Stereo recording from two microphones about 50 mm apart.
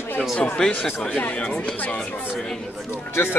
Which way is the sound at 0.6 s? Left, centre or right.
Centre.